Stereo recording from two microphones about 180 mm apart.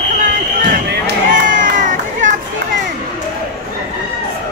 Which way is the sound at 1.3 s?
45° right (ahead or behind).